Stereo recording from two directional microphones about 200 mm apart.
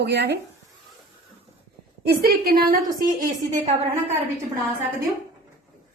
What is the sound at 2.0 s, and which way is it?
A woman's voice, 50° right (ahead or behind).